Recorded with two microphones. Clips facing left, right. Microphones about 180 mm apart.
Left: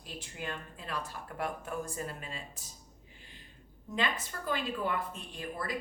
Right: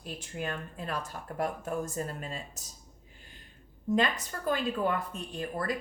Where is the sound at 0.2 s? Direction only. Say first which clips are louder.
Right 3 dB; 45° right (ahead or behind).